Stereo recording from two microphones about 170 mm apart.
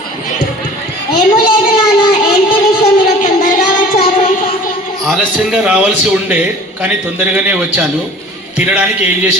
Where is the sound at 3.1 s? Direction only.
45° left (ahead or behind).